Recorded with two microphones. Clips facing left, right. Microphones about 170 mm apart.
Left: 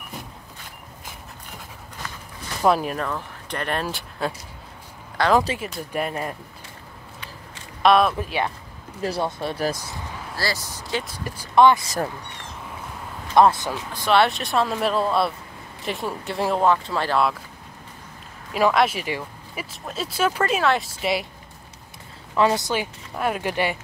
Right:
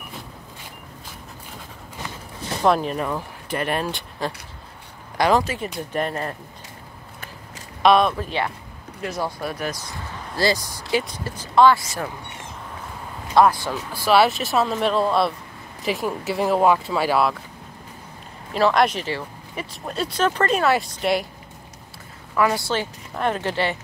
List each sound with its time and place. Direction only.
2.6 s speech: 5° left (ahead or behind)
3.0 s speech: 10° right (ahead or behind)
5.2 s speech: 15° right (ahead or behind)
5.6 s speech: 10° left (ahead or behind)
7.8 s speech: centre (ahead or behind)
9.0 s speech: 30° left (ahead or behind)
10.3 s speech: 20° right (ahead or behind)
11.1 s speech: 15° left (ahead or behind)
13.3 s speech: 20° left (ahead or behind)
13.9 s speech: 5° right (ahead or behind)
18.5 s speech: 5° left (ahead or behind)
22.3 s speech: 20° left (ahead or behind)
22.7 s speech: 10° left (ahead or behind)